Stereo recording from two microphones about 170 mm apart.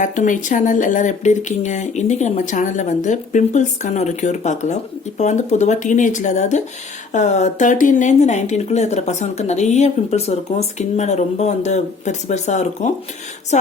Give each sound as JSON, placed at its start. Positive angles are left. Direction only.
{"t": 0.0, "sound": "a woman's voice", "side_deg": 45}